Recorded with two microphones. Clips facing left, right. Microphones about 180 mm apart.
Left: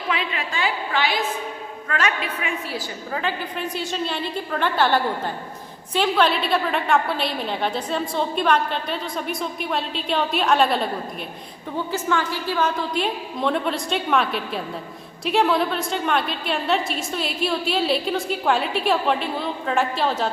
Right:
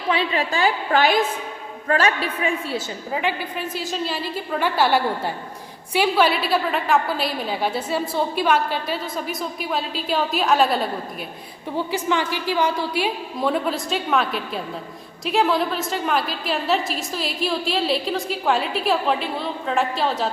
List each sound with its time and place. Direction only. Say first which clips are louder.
0.1 s a woman's voice: right 6 dB; 35° right (ahead or behind)
1.9 s a woman's voice: right 5 dB; 35° right (ahead or behind); by 3.3 s 15° right (ahead or behind)
3.8 s a woman's voice: even; centre (ahead or behind)
11.9 s a woman's voice: even; 15° right (ahead or behind); by 20.3 s centre (ahead or behind)